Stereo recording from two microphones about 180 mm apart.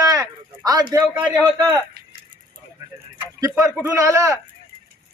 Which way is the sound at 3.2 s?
15° right (ahead or behind).